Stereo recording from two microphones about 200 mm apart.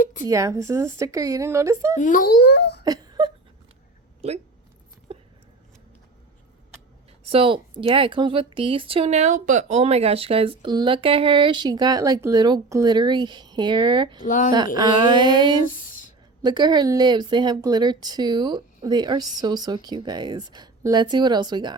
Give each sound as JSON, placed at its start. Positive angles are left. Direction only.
{"t": 0.0, "sound": "a sound", "side_deg": 40}
{"t": 0.3, "sound": "a woman's voice", "side_deg": -15}
{"t": 2.0, "sound": "a child's voice", "side_deg": 40}
{"t": 2.8, "sound": "wail", "side_deg": -20}
{"t": 5.1, "sound": "a sound", "side_deg": -30}
{"t": 7.3, "sound": "a woman's voice", "side_deg": -25}
{"t": 14.3, "sound": "speech", "side_deg": 40}
{"t": 14.5, "sound": "a woman's voice", "side_deg": -20}